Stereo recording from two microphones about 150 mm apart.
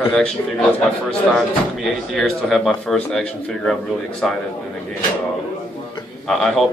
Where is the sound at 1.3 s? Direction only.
Centre (ahead or behind).